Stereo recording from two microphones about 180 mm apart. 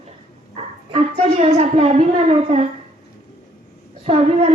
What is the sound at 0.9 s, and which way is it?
A woman's voice, 35° right (ahead or behind).